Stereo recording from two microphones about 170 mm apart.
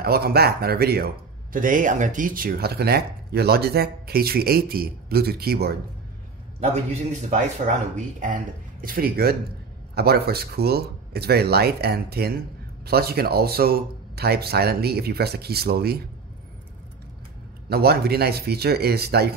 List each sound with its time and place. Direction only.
0.0 s a man's voice: 65° right (ahead or behind)
6.6 s speech: 40° right (ahead or behind)
8.8 s a man's voice: 60° right (ahead or behind)
17.6 s a man's voice: 65° right (ahead or behind)